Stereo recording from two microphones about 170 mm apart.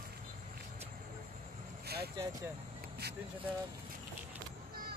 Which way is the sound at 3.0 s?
70° right (ahead or behind).